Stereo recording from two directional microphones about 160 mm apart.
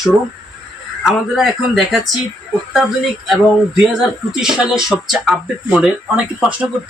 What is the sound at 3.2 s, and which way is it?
Speech, centre (ahead or behind).